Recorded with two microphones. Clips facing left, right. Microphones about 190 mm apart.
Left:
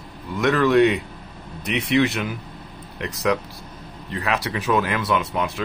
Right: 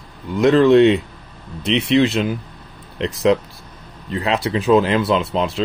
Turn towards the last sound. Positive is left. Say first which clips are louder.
# right 4 dB
turn(degrees=-25)  # may be behind; listen again after turning